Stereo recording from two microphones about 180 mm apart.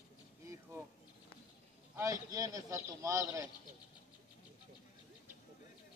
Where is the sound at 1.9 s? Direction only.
20° right (ahead or behind).